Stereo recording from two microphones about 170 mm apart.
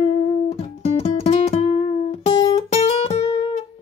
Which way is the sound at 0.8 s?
35° left (ahead or behind).